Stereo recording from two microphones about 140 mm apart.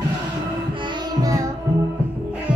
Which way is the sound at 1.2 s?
25° right (ahead or behind).